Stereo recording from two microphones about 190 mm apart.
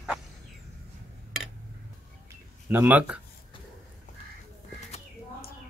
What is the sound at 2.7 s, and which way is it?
Speech, 10° right (ahead or behind).